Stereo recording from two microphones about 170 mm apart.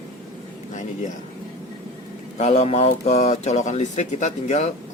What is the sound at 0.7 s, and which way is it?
Speech, 45° left (ahead or behind).